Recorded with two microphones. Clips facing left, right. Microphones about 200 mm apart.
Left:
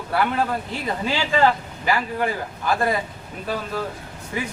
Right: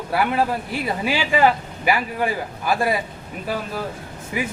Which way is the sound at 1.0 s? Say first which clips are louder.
Right 1 dB; 15° right (ahead or behind).